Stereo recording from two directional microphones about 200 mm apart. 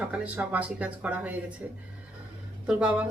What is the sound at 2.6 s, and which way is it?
Speech, 5° right (ahead or behind).